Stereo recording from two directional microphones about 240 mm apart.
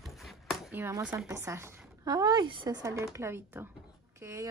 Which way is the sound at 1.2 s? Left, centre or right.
Centre.